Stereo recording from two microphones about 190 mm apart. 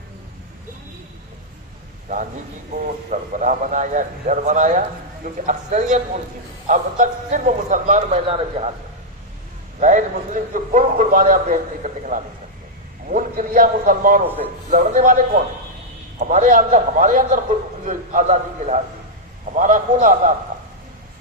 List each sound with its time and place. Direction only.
2.7 s a man's voice: 45° right (ahead or behind)
9.8 s a man's voice: 40° right (ahead or behind)